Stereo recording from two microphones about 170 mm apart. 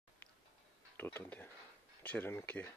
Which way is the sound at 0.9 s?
10° left (ahead or behind).